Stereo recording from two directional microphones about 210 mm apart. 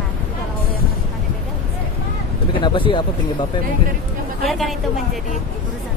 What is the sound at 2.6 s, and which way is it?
Speech, 25° left (ahead or behind).